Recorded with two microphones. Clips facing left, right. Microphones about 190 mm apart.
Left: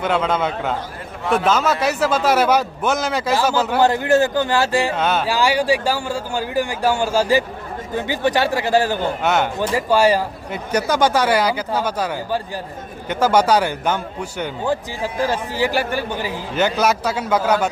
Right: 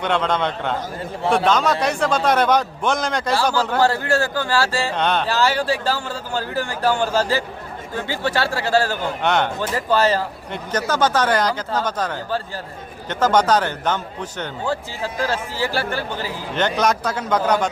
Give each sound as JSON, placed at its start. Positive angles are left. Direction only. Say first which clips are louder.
{"t": 0.0, "sound": "a man's voice", "louder": "left 1 dB", "side_deg": 5}
{"t": 3.7, "sound": "a man's voice", "louder": "left 3 dB", "side_deg": 15}
{"t": 4.9, "sound": "a man's voice", "louder": "left 1 dB", "side_deg": 5}
{"t": 9.2, "sound": "a man's voice", "louder": "right 1 dB", "side_deg": 5}